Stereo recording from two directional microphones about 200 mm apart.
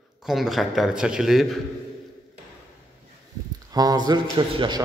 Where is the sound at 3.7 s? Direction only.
20° right (ahead or behind).